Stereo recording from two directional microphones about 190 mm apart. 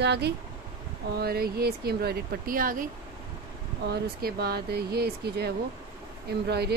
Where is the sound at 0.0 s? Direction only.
60° right (ahead or behind).